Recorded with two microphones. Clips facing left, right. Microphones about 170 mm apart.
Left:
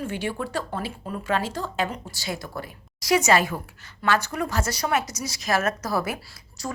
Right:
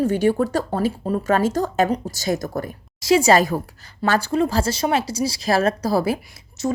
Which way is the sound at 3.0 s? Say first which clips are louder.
Right 5 dB; 30° right (ahead or behind).